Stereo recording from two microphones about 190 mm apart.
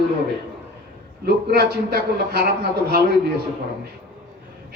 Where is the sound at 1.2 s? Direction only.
55° right (ahead or behind).